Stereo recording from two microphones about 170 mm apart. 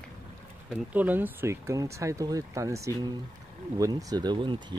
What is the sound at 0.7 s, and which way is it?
Speech, 10° right (ahead or behind).